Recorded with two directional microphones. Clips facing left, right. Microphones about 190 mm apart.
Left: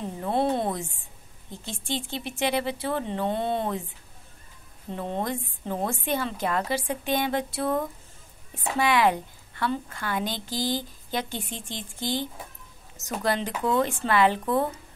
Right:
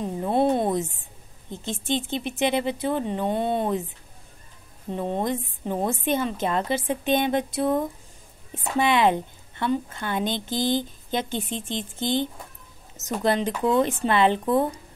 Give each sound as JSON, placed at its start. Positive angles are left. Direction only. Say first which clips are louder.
{"t": 0.0, "sound": "a sound", "louder": "right 4 dB", "side_deg": -20}
{"t": 1.5, "sound": "a woman's voice", "louder": "right 5 dB", "side_deg": -20}
{"t": 4.9, "sound": "a woman's voice", "louder": "right 4 dB", "side_deg": -15}